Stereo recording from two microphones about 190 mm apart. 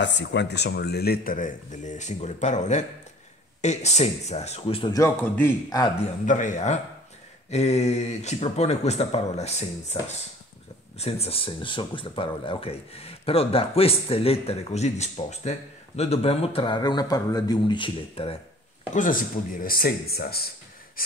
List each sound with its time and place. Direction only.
0.0 s speech: 70° left (ahead or behind); by 4.9 s 30° left (ahead or behind)
4.9 s speech: 15° left (ahead or behind)
6.2 s speech: 40° left (ahead or behind)
18.9 s speech: 45° left (ahead or behind)